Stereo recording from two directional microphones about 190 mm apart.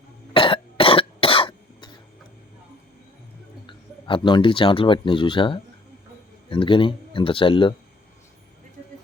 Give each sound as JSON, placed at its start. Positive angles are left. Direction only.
{"t": 0.3, "sound": "cough", "side_deg": 30}
{"t": 3.7, "sound": "speech", "side_deg": 25}